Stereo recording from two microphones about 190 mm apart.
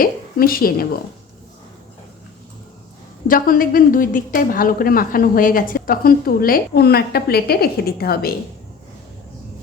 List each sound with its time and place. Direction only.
0.0 s a woman's voice: 50° left (ahead or behind)
3.2 s a woman's voice: 50° left (ahead or behind)